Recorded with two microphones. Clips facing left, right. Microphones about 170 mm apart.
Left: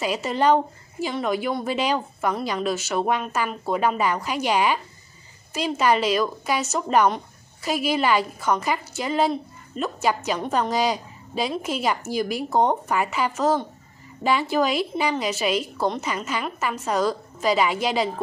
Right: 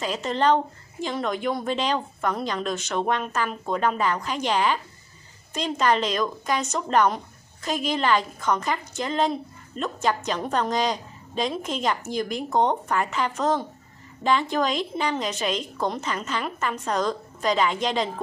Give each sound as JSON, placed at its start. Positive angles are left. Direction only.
{"t": 0.0, "sound": "a woman's voice", "side_deg": 10}